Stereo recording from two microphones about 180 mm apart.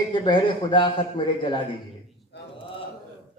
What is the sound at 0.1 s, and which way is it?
Speech, 25° left (ahead or behind).